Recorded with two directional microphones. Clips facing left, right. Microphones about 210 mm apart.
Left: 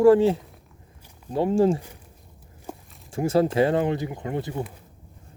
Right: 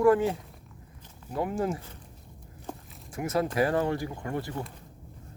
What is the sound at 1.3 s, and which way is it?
Speech, 30° left (ahead or behind).